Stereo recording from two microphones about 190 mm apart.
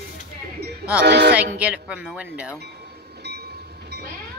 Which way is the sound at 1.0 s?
60° right (ahead or behind).